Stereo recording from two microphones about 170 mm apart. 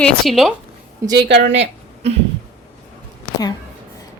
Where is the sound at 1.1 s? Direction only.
80° right.